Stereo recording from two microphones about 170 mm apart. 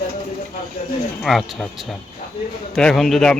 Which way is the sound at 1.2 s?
Centre (ahead or behind).